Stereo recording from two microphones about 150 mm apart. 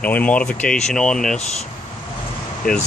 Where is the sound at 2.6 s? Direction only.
70° left (ahead or behind).